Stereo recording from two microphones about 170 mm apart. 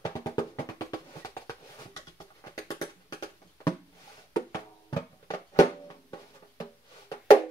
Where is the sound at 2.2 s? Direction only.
20° left (ahead or behind).